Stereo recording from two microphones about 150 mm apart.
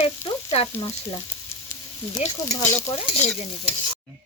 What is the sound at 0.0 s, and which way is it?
Frying, 40° left (ahead or behind).